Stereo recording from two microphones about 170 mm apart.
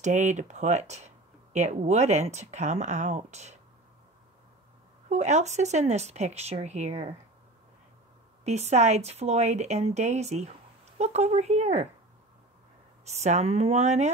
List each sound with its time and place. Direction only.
0.0 s speech: 45° right (ahead or behind)
5.1 s speech: 40° right (ahead or behind)
8.5 s speech: 40° right (ahead or behind)
13.0 s speech: 40° right (ahead or behind)